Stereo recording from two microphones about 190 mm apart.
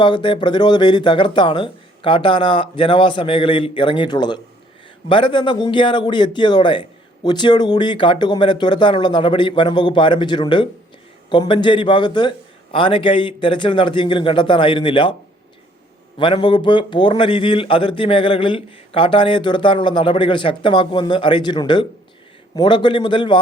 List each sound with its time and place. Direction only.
0.0 s a man's voice: 25° left (ahead or behind)
16.1 s a man's voice: 25° left (ahead or behind)